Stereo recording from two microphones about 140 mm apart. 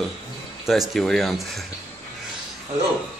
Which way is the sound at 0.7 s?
Centre (ahead or behind).